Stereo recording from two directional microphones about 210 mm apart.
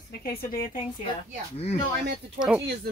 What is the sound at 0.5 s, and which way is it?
Speech, 45° left (ahead or behind).